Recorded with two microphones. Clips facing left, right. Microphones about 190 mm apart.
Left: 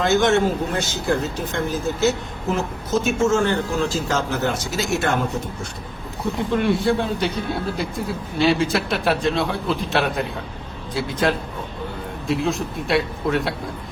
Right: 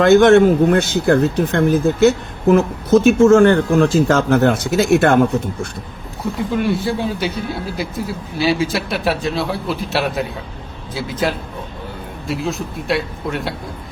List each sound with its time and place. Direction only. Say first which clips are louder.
0.0 s speech: right 8 dB; 55° right (ahead or behind)
6.5 s speech: even; centre (ahead or behind)